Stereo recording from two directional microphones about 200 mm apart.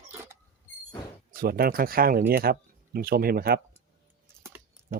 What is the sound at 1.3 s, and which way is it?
Speech, 50° right (ahead or behind).